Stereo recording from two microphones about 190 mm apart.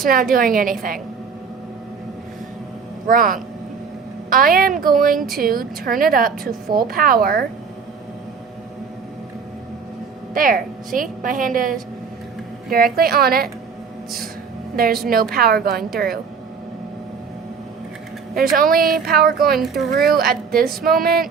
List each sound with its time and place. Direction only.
0.0 s a woman's voice: 50° right (ahead or behind)
3.1 s a woman's voice: 45° right (ahead or behind)
10.3 s a woman's voice: 45° right (ahead or behind)
14.8 s a woman's voice: 50° right (ahead or behind)
18.3 s a woman's voice: 50° right (ahead or behind)